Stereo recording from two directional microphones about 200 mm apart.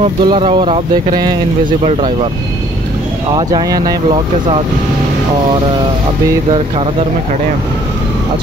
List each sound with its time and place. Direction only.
0.2 s speech: 25° right (ahead or behind)
3.3 s speech: 20° right (ahead or behind)